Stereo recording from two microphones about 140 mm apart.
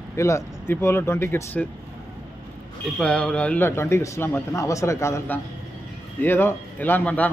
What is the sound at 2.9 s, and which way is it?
A man's voice, 5° left (ahead or behind).